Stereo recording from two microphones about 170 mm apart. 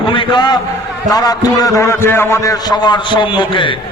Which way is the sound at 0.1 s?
30° left (ahead or behind).